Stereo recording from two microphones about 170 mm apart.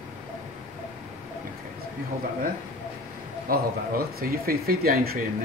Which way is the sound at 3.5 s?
60° right (ahead or behind).